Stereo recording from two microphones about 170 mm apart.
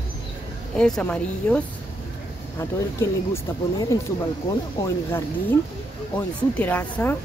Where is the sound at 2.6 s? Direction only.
15° left (ahead or behind).